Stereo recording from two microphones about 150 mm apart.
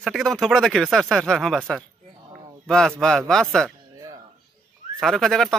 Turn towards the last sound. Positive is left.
turn(degrees=5)  # may be behind; listen again after turning